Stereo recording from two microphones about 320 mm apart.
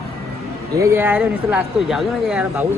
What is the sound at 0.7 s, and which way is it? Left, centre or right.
Speech, centre.